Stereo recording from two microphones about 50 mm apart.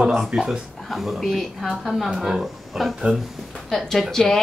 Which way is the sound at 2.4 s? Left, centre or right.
Centre.